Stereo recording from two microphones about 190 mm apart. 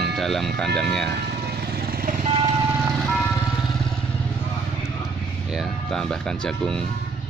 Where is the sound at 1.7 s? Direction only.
50° right (ahead or behind).